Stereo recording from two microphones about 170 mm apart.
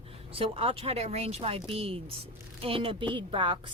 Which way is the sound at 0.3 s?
35° right (ahead or behind).